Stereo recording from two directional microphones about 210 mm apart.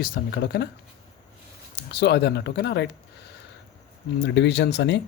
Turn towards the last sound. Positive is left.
turn(degrees=55)  # may be behind; listen again after turning